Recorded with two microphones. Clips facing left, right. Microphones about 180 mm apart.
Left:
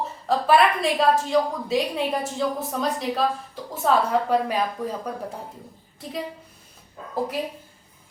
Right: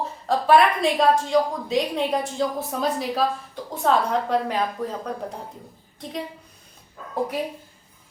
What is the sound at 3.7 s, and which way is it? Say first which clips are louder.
Speech: even; 5° left (ahead or behind).